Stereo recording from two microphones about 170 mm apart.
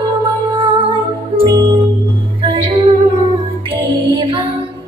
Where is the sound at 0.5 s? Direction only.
30° right (ahead or behind).